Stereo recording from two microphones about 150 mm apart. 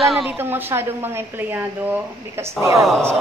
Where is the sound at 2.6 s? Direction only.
20° right (ahead or behind).